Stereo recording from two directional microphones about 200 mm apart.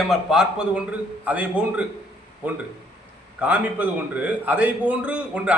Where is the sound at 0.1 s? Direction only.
Centre (ahead or behind).